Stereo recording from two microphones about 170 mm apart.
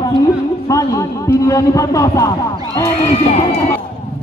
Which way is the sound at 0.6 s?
20° left (ahead or behind).